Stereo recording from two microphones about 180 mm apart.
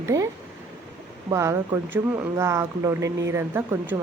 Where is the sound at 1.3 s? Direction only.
15° right (ahead or behind).